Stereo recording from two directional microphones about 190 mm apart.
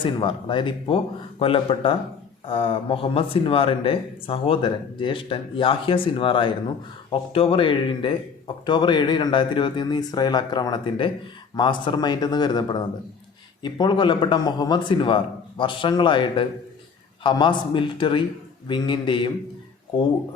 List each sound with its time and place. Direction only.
0.0 s speech: 25° left (ahead or behind)